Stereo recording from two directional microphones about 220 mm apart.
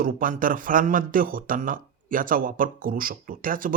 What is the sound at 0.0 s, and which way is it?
Speech, 40° right (ahead or behind).